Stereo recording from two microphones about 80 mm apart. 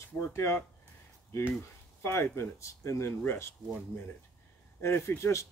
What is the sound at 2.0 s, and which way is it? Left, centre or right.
Speech, left.